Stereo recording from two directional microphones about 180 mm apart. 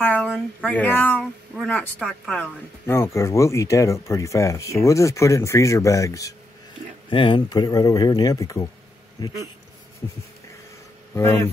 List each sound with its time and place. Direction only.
0.0 s a sound: 10° left (ahead or behind)
0.7 s speech: 10° left (ahead or behind)
7.1 s a man's voice: 30° left (ahead or behind)
11.1 s speech: 15° left (ahead or behind)